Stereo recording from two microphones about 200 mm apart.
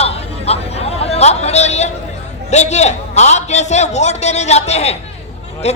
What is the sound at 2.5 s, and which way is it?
A man's voice, 35° left (ahead or behind).